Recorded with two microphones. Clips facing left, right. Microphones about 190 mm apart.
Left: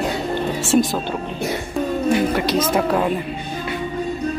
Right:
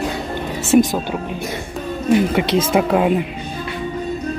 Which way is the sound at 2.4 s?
25° right (ahead or behind).